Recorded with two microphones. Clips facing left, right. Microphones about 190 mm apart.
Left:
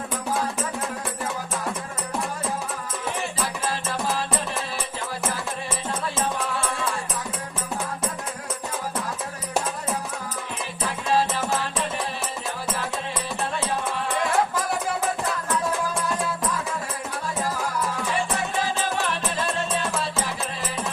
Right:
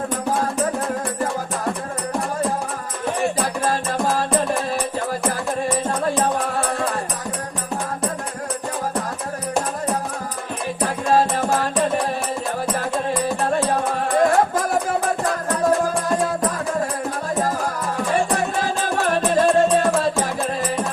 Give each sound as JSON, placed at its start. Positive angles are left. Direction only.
{"t": 3.4, "sound": "music", "side_deg": -50}
{"t": 6.3, "sound": "music", "side_deg": -50}
{"t": 10.8, "sound": "music", "side_deg": -50}